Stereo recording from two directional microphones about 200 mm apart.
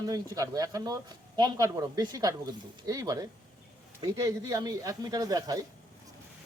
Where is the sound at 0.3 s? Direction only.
15° right (ahead or behind).